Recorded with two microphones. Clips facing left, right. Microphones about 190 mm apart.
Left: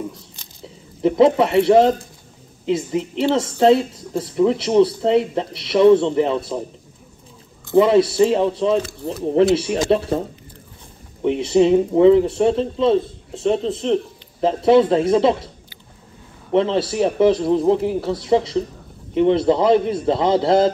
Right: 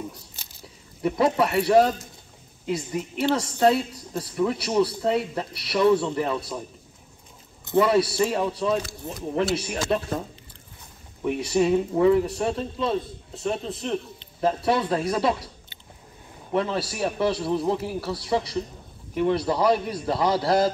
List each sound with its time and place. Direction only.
1.0 s speech: 25° left (ahead or behind)
7.7 s speech: 25° left (ahead or behind)
11.2 s speech: 25° left (ahead or behind)
16.5 s speech: 25° left (ahead or behind)